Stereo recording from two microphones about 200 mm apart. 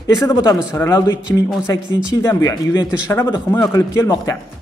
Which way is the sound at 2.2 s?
20° left (ahead or behind).